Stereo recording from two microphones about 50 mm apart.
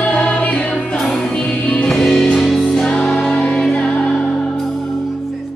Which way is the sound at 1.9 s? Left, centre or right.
Centre.